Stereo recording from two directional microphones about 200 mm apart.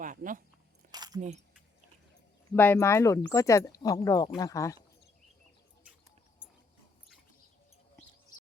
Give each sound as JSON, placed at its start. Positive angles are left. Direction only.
{"t": 0.0, "sound": "speech", "side_deg": -40}
{"t": 0.9, "sound": "keys jangling", "side_deg": -20}
{"t": 2.6, "sound": "speech", "side_deg": 10}